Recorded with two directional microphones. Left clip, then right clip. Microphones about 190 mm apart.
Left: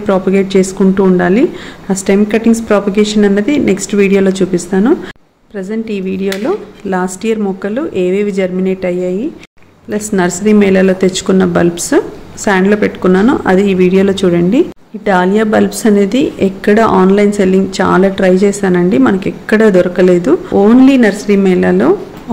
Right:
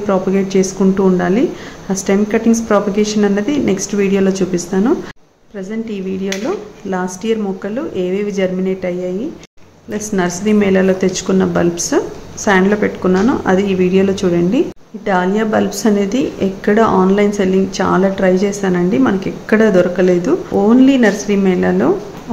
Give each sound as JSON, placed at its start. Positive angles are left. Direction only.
{"t": 0.0, "sound": "a woman's voice", "side_deg": 20}